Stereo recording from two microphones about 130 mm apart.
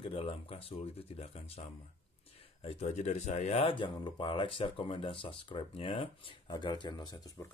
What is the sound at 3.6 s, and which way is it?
Speech, 40° left (ahead or behind).